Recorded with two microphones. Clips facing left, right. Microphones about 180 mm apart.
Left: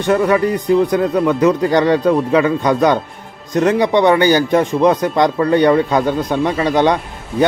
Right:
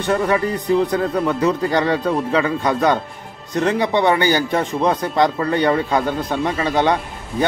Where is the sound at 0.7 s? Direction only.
15° left (ahead or behind).